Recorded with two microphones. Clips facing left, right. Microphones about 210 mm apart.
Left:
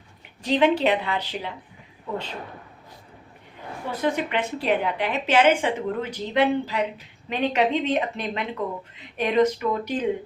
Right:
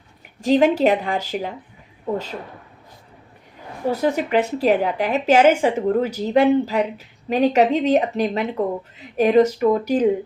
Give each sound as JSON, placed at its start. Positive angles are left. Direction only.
{"t": 0.4, "sound": "a woman's voice", "side_deg": -45}
{"t": 3.8, "sound": "speech", "side_deg": -40}